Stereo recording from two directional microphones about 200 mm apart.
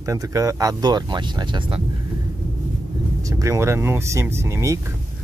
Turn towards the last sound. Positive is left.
turn(degrees=-15)  # may be behind; listen again after turning